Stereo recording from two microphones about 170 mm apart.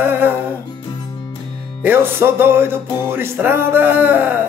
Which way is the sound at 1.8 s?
10° right (ahead or behind).